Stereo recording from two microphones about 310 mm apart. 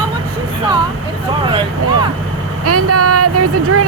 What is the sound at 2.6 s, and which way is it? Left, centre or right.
Speech, right.